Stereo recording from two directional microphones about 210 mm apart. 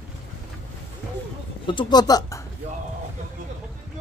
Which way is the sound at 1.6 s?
20° left (ahead or behind).